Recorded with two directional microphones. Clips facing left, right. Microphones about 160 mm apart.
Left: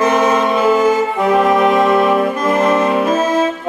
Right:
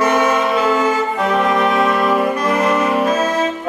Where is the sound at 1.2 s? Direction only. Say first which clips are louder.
Left 4 dB; 25° left (ahead or behind).